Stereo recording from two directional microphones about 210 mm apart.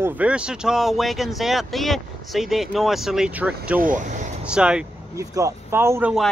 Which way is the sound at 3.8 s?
40° right (ahead or behind).